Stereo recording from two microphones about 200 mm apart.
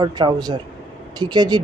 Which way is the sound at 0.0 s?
20° right (ahead or behind).